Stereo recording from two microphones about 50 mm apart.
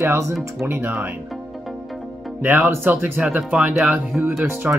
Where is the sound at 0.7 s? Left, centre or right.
Right.